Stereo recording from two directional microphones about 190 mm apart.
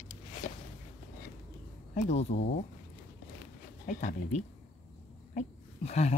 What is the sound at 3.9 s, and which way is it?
Speech, 45° left (ahead or behind).